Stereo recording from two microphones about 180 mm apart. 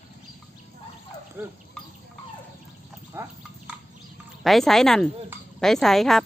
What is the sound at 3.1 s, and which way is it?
Speech, 15° right (ahead or behind).